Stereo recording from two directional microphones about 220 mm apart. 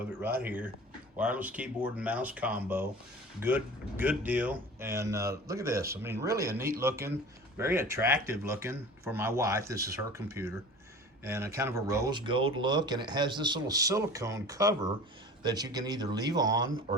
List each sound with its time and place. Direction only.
0.4 s speech: 10° right (ahead or behind)